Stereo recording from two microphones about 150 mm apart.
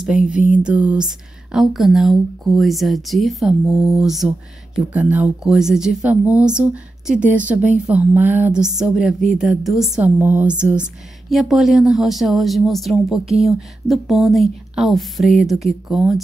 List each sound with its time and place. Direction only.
0.0 s speech: 5° right (ahead or behind)